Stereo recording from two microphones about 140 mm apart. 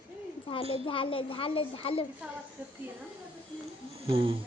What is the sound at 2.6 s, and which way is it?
Speech, 10° right (ahead or behind).